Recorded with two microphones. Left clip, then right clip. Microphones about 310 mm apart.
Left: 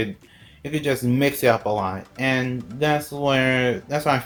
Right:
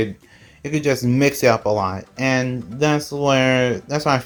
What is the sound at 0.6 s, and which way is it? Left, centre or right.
Speech, right.